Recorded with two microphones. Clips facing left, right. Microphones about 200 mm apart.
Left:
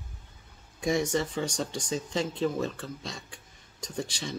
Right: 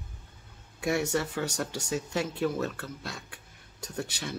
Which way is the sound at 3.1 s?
60° right (ahead or behind).